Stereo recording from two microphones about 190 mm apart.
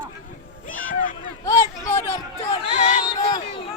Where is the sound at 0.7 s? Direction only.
45° left (ahead or behind).